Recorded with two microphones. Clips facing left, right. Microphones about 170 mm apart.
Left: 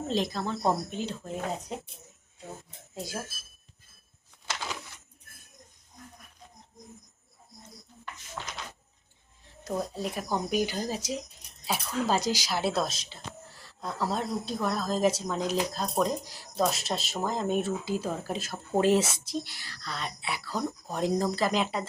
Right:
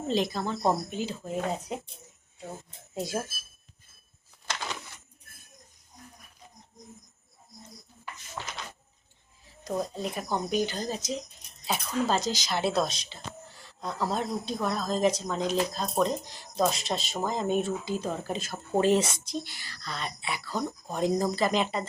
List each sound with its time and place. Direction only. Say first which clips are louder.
0.1 s speech: right 2 dB; centre (ahead or behind)
2.9 s speech: right 5 dB; 25° right (ahead or behind)
4.5 s a sound: right 1 dB; 5° left (ahead or behind)
9.6 s speech: right 1 dB; 5° left (ahead or behind)